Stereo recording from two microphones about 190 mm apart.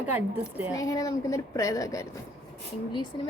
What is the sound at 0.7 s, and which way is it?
A woman's voice, 20° left (ahead or behind).